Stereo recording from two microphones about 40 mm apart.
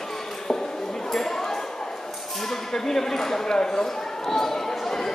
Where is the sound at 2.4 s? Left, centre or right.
Centre.